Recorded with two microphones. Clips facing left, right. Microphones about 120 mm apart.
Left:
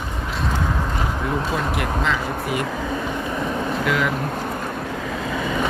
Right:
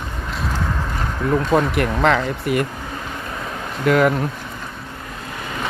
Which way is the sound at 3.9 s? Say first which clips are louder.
Right 9 dB; 45° right (ahead or behind).